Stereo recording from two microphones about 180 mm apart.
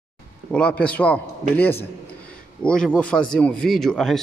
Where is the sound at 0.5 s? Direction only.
5° left (ahead or behind).